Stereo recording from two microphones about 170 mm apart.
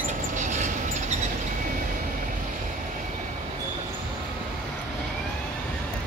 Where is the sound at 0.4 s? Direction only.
45° right (ahead or behind).